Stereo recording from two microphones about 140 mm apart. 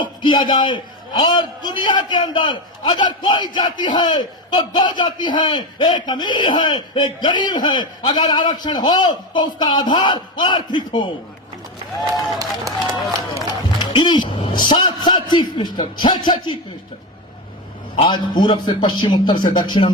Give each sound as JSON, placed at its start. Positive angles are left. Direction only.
{"t": 0.0, "sound": "a man's voice", "side_deg": 35}
{"t": 12.4, "sound": "speech", "side_deg": -25}
{"t": 13.9, "sound": "a man's voice", "side_deg": 35}
{"t": 17.9, "sound": "a man's voice", "side_deg": 40}